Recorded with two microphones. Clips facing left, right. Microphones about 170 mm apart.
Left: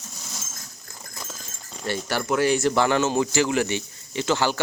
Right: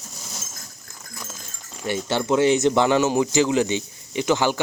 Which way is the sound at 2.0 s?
20° right (ahead or behind).